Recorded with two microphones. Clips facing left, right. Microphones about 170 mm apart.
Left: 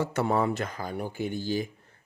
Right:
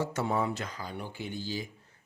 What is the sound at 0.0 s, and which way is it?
Speech, 60° left (ahead or behind).